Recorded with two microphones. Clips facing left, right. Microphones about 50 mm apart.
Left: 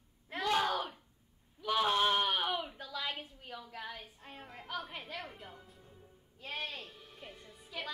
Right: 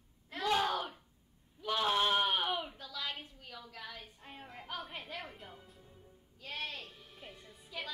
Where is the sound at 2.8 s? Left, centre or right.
Centre.